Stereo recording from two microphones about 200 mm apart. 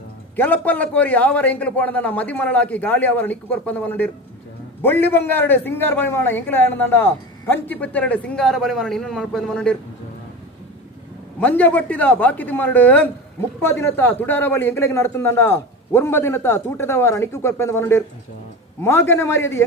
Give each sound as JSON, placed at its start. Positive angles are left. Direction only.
{"t": 0.4, "sound": "a man's voice", "side_deg": 10}
{"t": 11.3, "sound": "a man's voice", "side_deg": 10}